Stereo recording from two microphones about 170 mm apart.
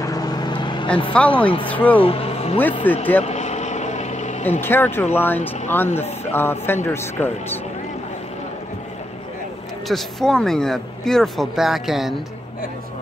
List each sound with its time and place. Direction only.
0.0 s vehicle: 20° left (ahead or behind)
1.1 s speech: 5° left (ahead or behind)
2.0 s vehicle: 35° left (ahead or behind)
2.9 s speech: 10° left (ahead or behind)
3.2 s vehicle: 40° left (ahead or behind)
4.5 s speech: 10° left (ahead or behind)
9.8 s speech: centre (ahead or behind)